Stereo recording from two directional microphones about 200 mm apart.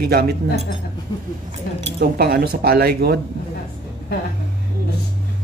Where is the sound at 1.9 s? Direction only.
50° right (ahead or behind).